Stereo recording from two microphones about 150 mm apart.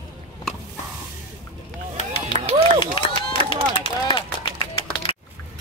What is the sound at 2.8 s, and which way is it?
Run, 35° left (ahead or behind).